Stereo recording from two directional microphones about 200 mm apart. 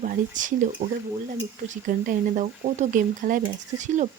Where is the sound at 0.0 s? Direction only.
40° right (ahead or behind).